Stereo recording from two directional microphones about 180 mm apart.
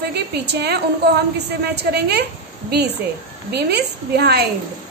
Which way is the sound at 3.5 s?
65° right (ahead or behind).